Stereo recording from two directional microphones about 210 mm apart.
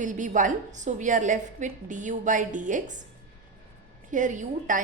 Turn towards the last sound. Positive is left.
turn(degrees=-35)  # may be behind; listen again after turning